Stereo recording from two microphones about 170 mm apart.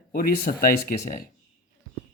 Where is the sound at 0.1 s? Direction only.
60° left (ahead or behind).